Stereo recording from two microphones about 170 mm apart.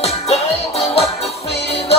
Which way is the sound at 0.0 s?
35° left (ahead or behind).